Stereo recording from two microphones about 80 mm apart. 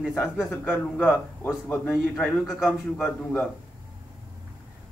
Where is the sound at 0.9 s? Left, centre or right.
Centre.